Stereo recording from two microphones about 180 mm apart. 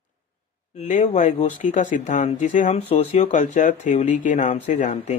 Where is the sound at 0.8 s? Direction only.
40° left (ahead or behind).